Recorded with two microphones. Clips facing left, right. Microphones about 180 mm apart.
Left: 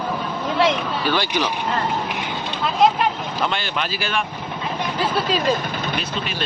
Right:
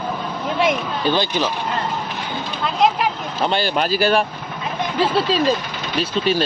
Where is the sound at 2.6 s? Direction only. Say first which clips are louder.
Left 1 dB; centre (ahead or behind).